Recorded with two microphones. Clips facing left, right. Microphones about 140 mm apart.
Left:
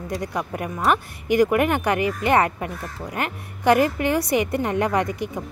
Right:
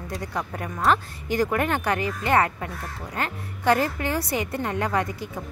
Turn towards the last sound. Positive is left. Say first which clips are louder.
# left 4 dB
turn(degrees=20)  # may be behind; listen again after turning